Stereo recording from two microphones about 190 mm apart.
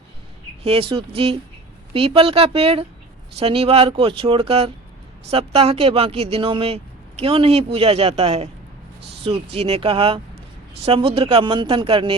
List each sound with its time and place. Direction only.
0.6 s speech: 30° right (ahead or behind)